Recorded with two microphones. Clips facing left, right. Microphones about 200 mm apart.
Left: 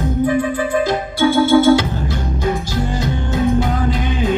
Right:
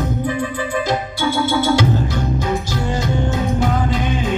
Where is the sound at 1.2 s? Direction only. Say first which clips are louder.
Left 9 dB; 50° left (ahead or behind).